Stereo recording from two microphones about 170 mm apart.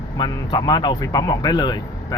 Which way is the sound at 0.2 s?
25° left (ahead or behind).